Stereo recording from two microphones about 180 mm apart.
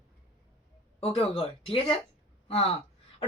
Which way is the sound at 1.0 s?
30° left (ahead or behind).